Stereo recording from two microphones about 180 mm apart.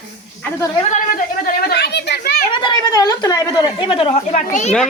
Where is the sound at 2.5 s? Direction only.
25° left (ahead or behind).